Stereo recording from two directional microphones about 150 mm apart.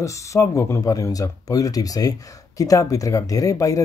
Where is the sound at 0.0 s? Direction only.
20° left (ahead or behind).